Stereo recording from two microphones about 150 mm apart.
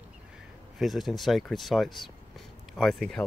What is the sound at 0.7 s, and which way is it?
Speech, centre (ahead or behind).